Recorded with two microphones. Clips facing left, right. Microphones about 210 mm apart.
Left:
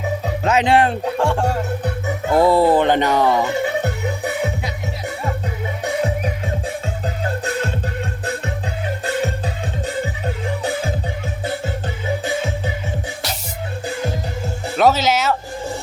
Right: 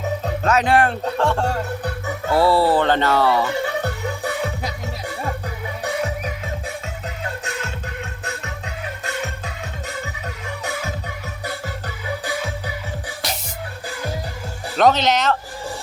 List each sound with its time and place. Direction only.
0.4 s speech: 25° left (ahead or behind)
1.0 s speech: 10° left (ahead or behind)
5.8 s music: 30° left (ahead or behind)
13.8 s music: 25° left (ahead or behind)
14.8 s speech: 5° left (ahead or behind)